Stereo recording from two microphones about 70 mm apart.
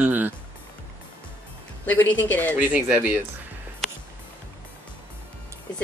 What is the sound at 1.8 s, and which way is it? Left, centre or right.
Speech, left.